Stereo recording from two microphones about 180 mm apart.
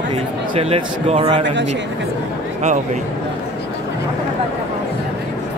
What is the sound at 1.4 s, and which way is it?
Speech, 80° right.